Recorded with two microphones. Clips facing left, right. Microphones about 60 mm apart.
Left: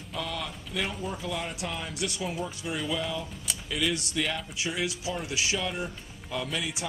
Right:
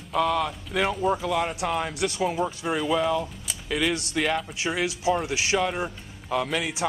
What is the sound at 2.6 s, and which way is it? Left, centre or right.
Speech, right.